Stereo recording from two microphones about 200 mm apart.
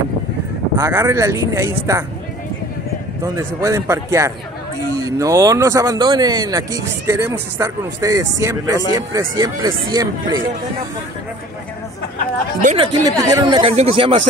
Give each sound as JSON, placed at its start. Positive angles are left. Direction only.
{"t": 0.7, "sound": "speech", "side_deg": -15}
{"t": 3.3, "sound": "speech", "side_deg": -15}
{"t": 12.7, "sound": "speech", "side_deg": -20}